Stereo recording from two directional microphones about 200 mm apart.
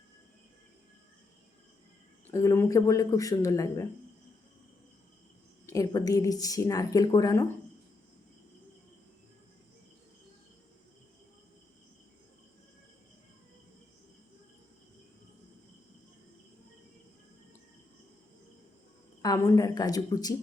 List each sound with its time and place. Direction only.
2.3 s speech: 15° left (ahead or behind)
5.7 s speech: 15° left (ahead or behind)
19.2 s a woman's voice: 15° left (ahead or behind)